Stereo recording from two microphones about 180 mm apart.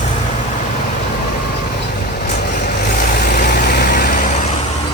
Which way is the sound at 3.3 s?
60° left (ahead or behind).